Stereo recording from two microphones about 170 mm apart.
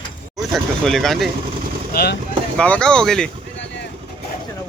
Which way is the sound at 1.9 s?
80° left.